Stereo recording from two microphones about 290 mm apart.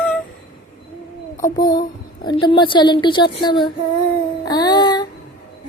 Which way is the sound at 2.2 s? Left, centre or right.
Centre.